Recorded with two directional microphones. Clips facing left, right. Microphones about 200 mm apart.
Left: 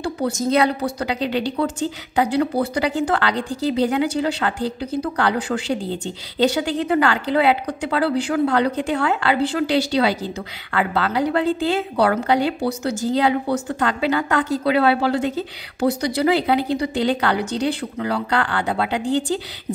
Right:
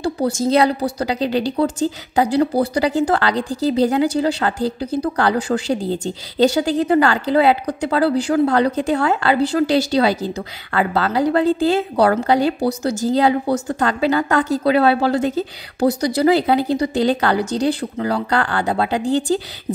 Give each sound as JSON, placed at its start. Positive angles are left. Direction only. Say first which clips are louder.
{"t": 0.0, "sound": "a woman's voice", "louder": "right 3 dB", "side_deg": -35}